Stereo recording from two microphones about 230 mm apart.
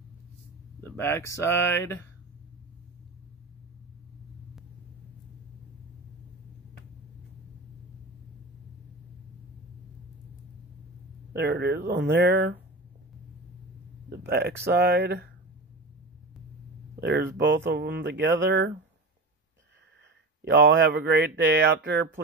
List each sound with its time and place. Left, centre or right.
0.8 s speech: centre
11.3 s speech: right
14.0 s speech: right
17.0 s speech: right
20.4 s speech: right